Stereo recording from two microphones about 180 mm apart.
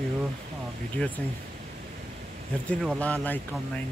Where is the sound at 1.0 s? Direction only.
5° left (ahead or behind).